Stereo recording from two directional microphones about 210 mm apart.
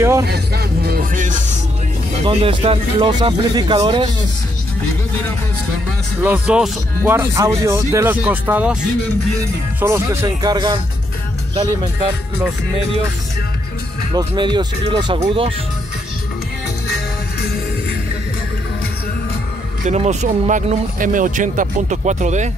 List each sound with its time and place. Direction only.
0.3 s speech: 50° right (ahead or behind)
2.2 s speech: 30° right (ahead or behind)
6.2 s speech: 5° right (ahead or behind)
9.8 s speech: 15° right (ahead or behind)
14.1 s speech: 20° right (ahead or behind)
19.8 s speech: 35° right (ahead or behind)